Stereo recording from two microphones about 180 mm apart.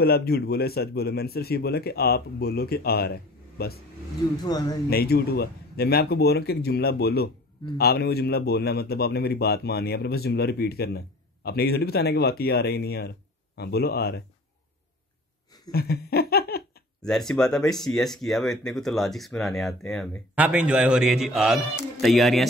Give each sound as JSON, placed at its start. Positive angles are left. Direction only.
{"t": 0.0, "sound": "speech", "side_deg": 60}
{"t": 4.4, "sound": "a man's voice", "side_deg": 20}
{"t": 4.8, "sound": "speech", "side_deg": 60}
{"t": 15.7, "sound": "laughter", "side_deg": 60}
{"t": 17.0, "sound": "speech", "side_deg": 5}
{"t": 20.3, "sound": "speech", "side_deg": -5}